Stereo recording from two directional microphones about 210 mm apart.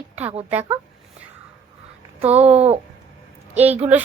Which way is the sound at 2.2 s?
30° right (ahead or behind).